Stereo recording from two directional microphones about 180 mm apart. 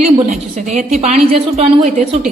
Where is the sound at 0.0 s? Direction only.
45° right (ahead or behind).